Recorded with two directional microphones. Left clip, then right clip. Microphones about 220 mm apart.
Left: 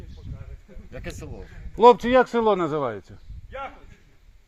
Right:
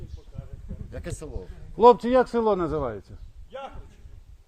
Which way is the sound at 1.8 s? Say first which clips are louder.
Left 2 dB; 15° left (ahead or behind).